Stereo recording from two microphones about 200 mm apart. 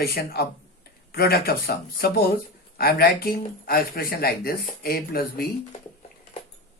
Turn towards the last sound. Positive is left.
turn(degrees=50)  # may be behind; listen again after turning